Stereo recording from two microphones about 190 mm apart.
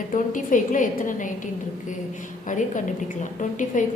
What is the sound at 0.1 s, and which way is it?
A woman's voice, 45° left (ahead or behind).